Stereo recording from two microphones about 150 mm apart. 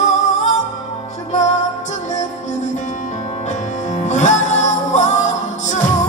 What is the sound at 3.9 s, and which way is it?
Music, 50° left (ahead or behind).